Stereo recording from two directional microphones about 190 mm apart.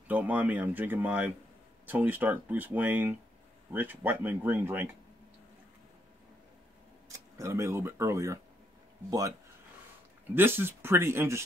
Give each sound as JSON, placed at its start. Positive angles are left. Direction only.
{"t": 0.1, "sound": "speech", "side_deg": -10}
{"t": 7.1, "sound": "speech", "side_deg": -15}
{"t": 10.2, "sound": "speech", "side_deg": -10}